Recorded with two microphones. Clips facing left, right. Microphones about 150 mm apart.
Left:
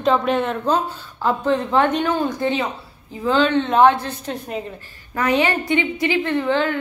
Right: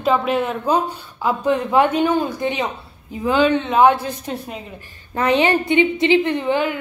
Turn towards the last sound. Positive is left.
turn(degrees=-15)  # may be behind; listen again after turning